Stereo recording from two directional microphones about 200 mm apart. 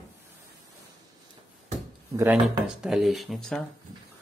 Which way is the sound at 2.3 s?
Centre (ahead or behind).